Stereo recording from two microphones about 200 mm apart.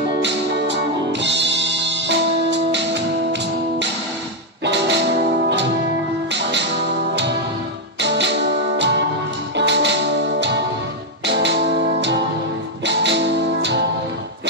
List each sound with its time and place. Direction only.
0.2 s music: 60° right (ahead or behind)
4.6 s music: 60° right (ahead or behind)